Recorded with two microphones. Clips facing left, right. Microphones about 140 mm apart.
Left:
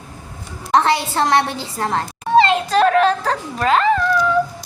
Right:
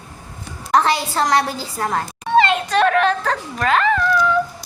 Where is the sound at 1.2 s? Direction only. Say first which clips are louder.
Left 1 dB; 25° left (ahead or behind).